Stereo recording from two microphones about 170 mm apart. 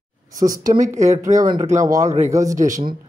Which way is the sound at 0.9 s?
45° right (ahead or behind).